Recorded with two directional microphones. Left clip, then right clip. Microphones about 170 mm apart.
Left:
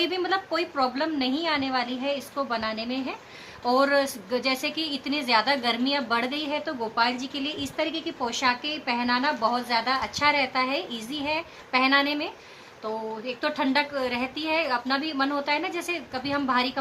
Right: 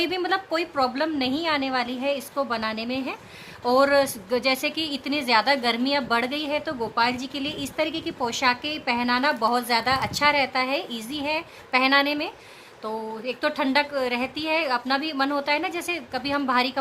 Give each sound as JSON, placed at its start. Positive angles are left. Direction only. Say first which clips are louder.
{"t": 0.0, "sound": "a woman's voice", "louder": "right 1 dB", "side_deg": -60}